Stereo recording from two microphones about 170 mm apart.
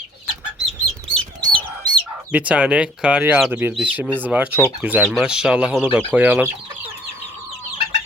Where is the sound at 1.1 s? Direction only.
30° right (ahead or behind).